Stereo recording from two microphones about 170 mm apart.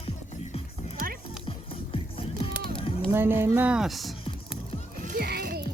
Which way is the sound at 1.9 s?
30° left (ahead or behind).